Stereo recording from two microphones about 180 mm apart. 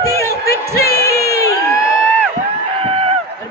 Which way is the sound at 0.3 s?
60° left (ahead or behind).